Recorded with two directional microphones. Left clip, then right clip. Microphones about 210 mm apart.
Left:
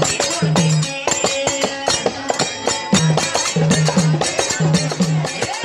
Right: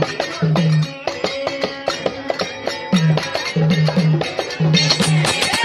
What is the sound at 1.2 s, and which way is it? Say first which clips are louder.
Music: left 1 dB; 15° right (ahead or behind).